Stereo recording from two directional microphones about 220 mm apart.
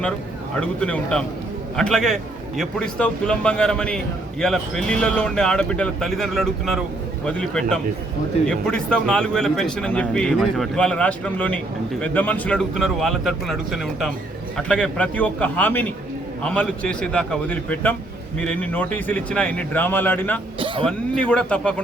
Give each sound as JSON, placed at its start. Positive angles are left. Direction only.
{"t": 0.6, "sound": "speech", "side_deg": 5}
{"t": 20.6, "sound": "a sound", "side_deg": -25}
{"t": 20.8, "sound": "speech", "side_deg": 5}